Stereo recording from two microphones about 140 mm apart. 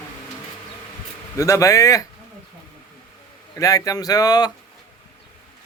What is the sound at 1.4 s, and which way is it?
Speech, 20° left (ahead or behind).